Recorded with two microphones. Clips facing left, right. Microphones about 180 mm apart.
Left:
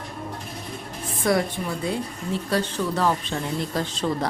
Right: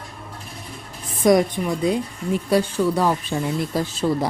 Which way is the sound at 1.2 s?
20° right (ahead or behind).